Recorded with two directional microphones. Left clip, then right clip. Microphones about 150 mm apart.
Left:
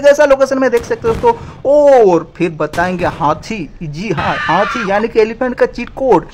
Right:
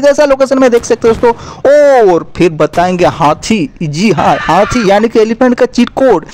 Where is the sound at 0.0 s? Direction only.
55° right (ahead or behind).